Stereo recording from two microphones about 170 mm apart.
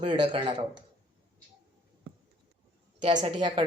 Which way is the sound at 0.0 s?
30° right (ahead or behind).